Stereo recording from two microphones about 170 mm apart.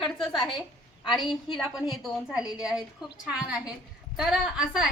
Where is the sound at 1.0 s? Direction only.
25° left (ahead or behind).